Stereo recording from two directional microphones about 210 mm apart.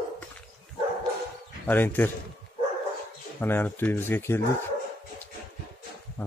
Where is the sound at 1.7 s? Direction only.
10° left (ahead or behind).